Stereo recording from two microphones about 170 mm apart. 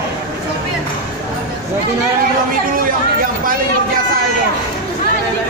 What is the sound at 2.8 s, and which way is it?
Speech, 55° right (ahead or behind).